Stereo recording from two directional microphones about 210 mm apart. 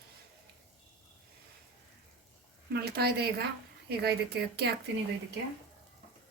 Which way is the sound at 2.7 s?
50° right (ahead or behind).